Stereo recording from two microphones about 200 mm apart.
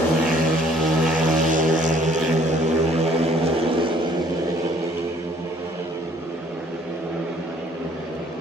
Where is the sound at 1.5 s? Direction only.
40° right (ahead or behind).